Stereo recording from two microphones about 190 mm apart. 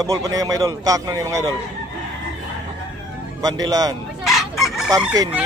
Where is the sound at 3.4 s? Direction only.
20° right (ahead or behind).